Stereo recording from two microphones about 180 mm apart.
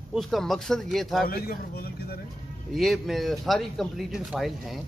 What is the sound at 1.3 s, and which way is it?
Speech, 55° left (ahead or behind).